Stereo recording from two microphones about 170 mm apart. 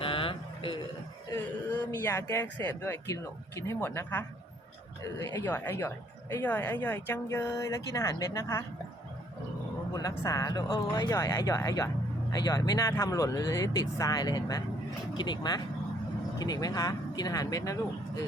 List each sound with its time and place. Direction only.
0.0 s a sound: 30° left (ahead or behind)
1.3 s speech: 15° left (ahead or behind)
9.9 s speech: 20° left (ahead or behind)